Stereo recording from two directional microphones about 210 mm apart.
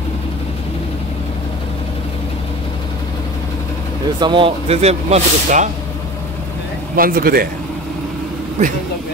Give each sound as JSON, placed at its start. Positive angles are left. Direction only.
{"t": 4.2, "sound": "speech", "side_deg": -25}
{"t": 7.0, "sound": "speech", "side_deg": -45}
{"t": 8.6, "sound": "speech", "side_deg": -35}